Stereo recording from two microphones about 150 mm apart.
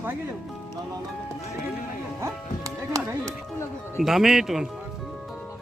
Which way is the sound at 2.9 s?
20° right (ahead or behind).